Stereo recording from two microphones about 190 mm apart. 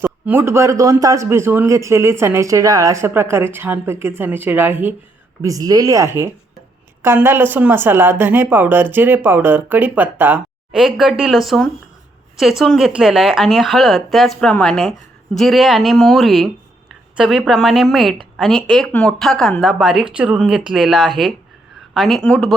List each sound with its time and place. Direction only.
0.0 s a man's voice: 10° right (ahead or behind)